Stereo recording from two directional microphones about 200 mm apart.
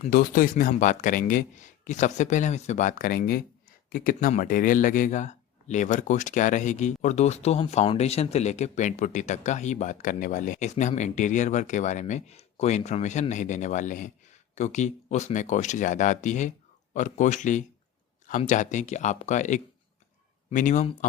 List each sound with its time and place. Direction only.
0.1 s speech: 45° left (ahead or behind)